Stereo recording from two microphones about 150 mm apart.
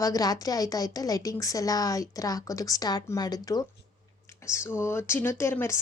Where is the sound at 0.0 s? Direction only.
25° left (ahead or behind).